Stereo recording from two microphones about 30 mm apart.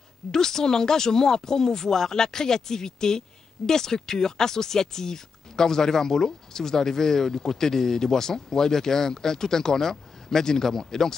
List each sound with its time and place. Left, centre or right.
0.3 s speech: centre